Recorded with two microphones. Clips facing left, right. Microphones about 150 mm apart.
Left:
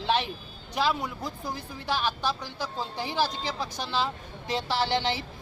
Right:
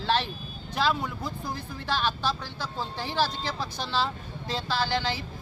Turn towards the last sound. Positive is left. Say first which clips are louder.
# left 1 dB
turn(degrees=25)  # may be behind; listen again after turning